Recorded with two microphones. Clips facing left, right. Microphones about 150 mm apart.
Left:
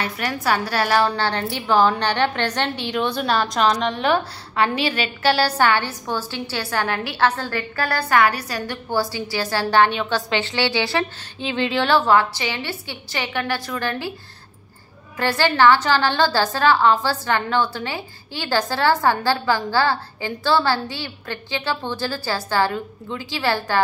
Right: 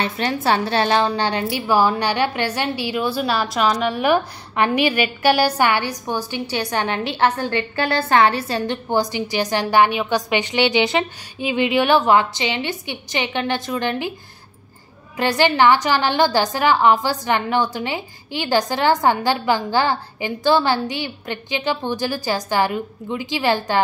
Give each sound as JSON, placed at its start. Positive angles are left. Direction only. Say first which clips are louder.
{"t": 0.0, "sound": "a woman's voice", "louder": "right 3 dB", "side_deg": -25}
{"t": 15.1, "sound": "a woman's voice", "louder": "right 2 dB", "side_deg": -20}